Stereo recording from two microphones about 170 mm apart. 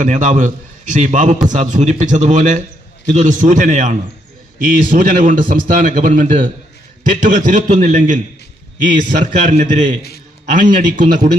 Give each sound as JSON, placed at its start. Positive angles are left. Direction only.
{"t": 0.0, "sound": "a man's voice", "side_deg": -45}